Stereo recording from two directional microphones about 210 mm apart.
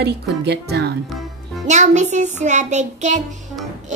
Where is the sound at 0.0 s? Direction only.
50° right (ahead or behind).